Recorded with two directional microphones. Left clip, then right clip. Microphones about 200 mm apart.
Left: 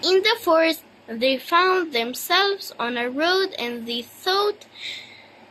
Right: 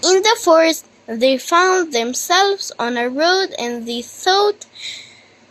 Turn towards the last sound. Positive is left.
turn(degrees=-35)  # may be behind; listen again after turning